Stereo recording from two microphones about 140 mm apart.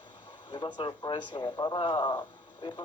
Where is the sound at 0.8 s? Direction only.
35° left (ahead or behind).